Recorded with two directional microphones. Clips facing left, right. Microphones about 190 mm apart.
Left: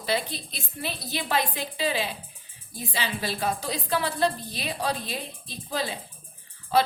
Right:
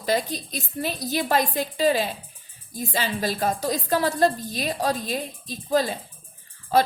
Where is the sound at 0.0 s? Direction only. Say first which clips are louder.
Right 4 dB; 45° right (ahead or behind).